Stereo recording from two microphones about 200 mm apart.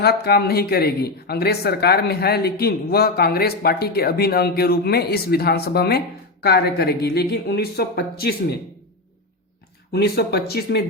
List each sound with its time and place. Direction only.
0.0 s speech: 50° left (ahead or behind)
9.9 s speech: 55° left (ahead or behind)